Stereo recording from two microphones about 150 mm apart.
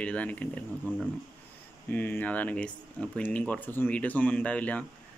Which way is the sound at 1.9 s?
15° left (ahead or behind).